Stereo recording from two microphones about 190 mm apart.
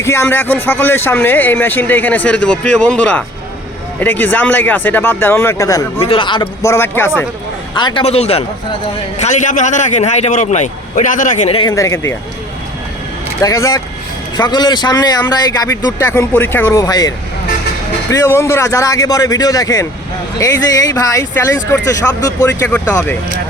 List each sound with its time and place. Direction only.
0.0 s speech: 15° left (ahead or behind)
7.8 s a man's voice: 25° left (ahead or behind)
11.7 s speech: 15° left (ahead or behind)
13.4 s a man's voice: 15° left (ahead or behind)